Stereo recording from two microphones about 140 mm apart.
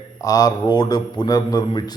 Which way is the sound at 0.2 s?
25° left (ahead or behind).